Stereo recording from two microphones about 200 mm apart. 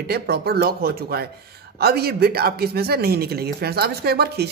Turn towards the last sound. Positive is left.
turn(degrees=-50)  # may be behind; listen again after turning